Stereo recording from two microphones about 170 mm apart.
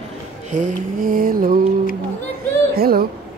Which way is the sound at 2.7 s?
60° right (ahead or behind).